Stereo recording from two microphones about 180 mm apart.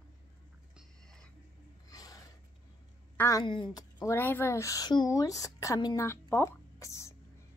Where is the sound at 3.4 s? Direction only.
25° left (ahead or behind).